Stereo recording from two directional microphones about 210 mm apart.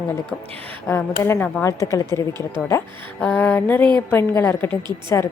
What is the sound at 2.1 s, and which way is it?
Speech, 20° right (ahead or behind).